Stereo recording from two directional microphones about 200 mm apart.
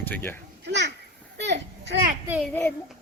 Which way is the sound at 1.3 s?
60° right (ahead or behind).